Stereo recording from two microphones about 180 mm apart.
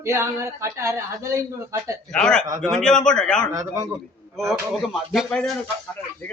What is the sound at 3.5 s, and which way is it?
Speech, 20° right (ahead or behind).